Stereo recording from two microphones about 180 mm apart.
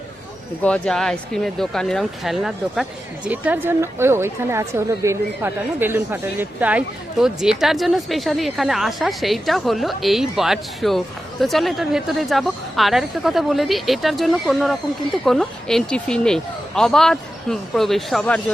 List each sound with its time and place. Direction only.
0.6 s a woman's voice: 5° left (ahead or behind)